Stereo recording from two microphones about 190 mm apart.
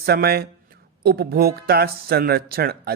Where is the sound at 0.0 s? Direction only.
55° right (ahead or behind).